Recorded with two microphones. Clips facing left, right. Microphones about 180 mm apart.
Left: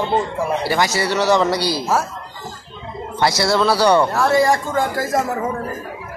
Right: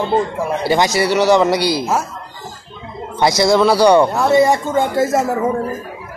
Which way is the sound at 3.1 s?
20° right (ahead or behind).